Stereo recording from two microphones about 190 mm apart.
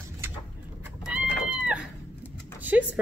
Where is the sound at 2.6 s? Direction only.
10° right (ahead or behind).